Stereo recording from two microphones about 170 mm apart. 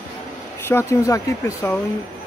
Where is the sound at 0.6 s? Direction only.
15° left (ahead or behind).